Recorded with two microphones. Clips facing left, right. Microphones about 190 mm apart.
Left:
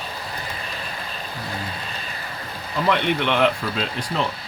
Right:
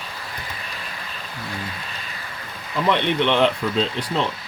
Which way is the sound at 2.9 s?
25° right (ahead or behind).